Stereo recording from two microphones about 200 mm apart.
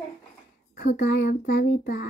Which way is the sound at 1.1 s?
55° left (ahead or behind).